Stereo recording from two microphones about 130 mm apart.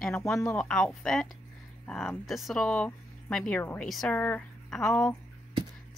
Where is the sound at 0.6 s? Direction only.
10° left (ahead or behind).